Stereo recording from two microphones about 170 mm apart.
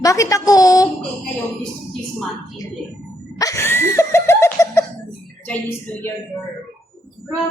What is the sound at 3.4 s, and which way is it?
Laughter, 15° left (ahead or behind).